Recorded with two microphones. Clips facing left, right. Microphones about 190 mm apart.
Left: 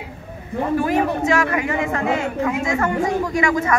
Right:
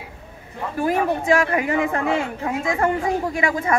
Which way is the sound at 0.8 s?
30° right (ahead or behind).